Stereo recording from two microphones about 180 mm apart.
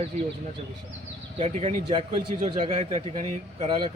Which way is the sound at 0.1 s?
40° right (ahead or behind).